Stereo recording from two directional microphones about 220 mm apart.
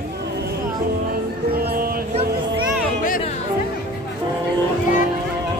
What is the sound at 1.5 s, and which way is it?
Music, 45° right (ahead or behind).